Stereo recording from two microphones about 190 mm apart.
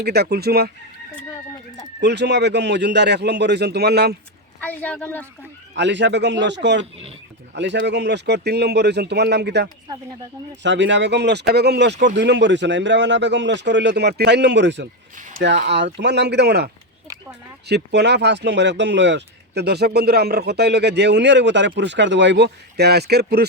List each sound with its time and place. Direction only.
0.0 s speech: 55° right (ahead or behind)
2.0 s speech: 65° right (ahead or behind)
4.6 s a woman's voice: 10° left (ahead or behind)
5.7 s speech: 70° right (ahead or behind)
17.7 s speech: 60° right (ahead or behind)